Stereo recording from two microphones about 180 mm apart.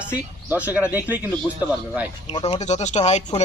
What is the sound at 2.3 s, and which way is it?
Speech, 30° left (ahead or behind).